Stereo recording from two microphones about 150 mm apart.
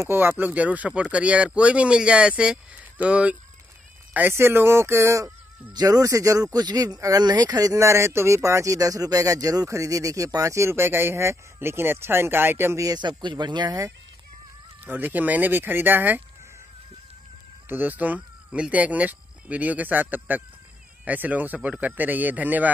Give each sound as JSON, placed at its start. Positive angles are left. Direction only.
{"t": 0.0, "sound": "speech", "side_deg": -15}
{"t": 14.9, "sound": "speech", "side_deg": -10}
{"t": 17.6, "sound": "speech", "side_deg": -10}